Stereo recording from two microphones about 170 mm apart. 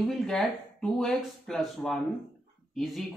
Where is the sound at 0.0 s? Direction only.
Centre (ahead or behind).